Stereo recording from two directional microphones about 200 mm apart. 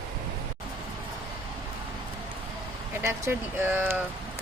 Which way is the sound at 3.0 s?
10° right (ahead or behind).